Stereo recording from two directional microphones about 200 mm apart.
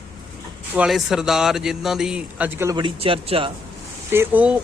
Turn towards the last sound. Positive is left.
turn(degrees=-5)  # may be behind; listen again after turning